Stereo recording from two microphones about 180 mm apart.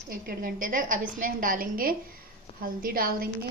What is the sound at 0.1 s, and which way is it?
A woman's voice, 50° right (ahead or behind).